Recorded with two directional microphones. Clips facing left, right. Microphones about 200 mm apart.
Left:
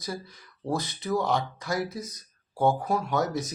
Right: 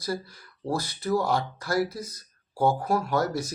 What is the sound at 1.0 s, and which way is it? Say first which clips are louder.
Speech: right 2 dB; centre (ahead or behind).